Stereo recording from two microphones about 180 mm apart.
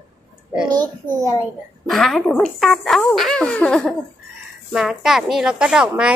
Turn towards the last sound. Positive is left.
turn(degrees=-5)  # may be behind; listen again after turning